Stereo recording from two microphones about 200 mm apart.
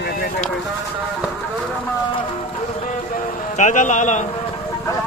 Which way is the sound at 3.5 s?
40° left (ahead or behind).